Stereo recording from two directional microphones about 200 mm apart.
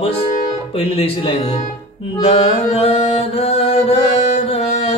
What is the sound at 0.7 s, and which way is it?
Speech, 30° left (ahead or behind).